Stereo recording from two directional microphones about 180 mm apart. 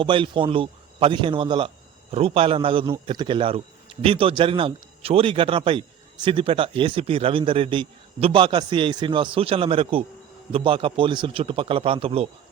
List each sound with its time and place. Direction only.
0.0 s a man's voice: 30° right (ahead or behind)